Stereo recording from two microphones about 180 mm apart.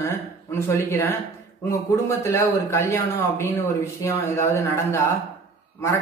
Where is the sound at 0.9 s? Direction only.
15° left (ahead or behind).